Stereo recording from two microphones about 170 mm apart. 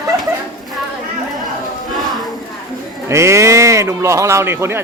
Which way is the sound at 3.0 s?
15° right (ahead or behind).